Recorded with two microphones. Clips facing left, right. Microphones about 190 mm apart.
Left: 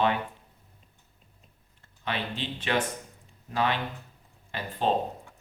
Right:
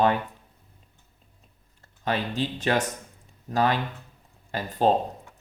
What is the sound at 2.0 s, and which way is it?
Speech, 40° right (ahead or behind).